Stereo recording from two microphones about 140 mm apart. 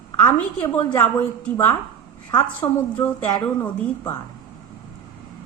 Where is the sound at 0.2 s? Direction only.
10° left (ahead or behind).